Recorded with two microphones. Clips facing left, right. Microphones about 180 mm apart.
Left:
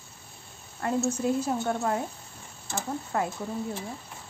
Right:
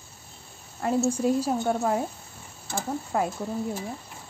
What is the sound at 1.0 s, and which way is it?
Speech, 10° right (ahead or behind).